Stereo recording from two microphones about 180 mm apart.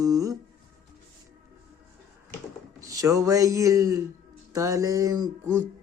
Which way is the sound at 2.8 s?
20° right (ahead or behind).